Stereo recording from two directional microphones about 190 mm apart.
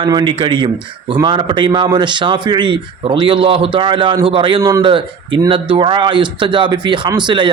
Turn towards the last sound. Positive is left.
turn(degrees=-25)  # may be behind; listen again after turning